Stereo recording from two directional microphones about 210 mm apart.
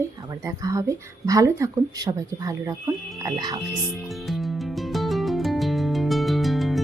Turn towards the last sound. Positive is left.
turn(degrees=0)  # may be behind; listen again after turning